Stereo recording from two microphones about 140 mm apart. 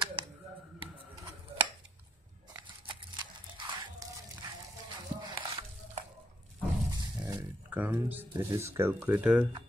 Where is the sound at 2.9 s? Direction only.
35° right (ahead or behind).